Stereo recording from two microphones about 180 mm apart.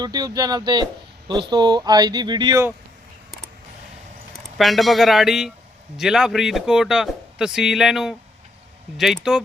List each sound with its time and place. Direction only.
0.0 s speech: 25° right (ahead or behind)
4.4 s speech: centre (ahead or behind)